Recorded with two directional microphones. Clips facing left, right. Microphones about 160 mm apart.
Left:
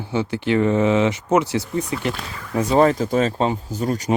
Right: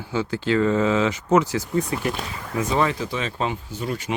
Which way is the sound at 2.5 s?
40° left (ahead or behind).